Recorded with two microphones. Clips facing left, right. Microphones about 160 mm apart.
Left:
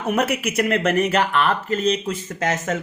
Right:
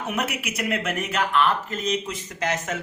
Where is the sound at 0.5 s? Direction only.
50° left (ahead or behind).